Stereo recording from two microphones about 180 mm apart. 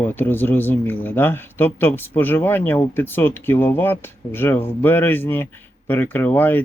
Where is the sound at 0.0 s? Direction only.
10° left (ahead or behind).